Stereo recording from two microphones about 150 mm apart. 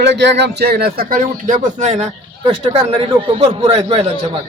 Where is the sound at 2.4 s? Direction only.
35° right (ahead or behind).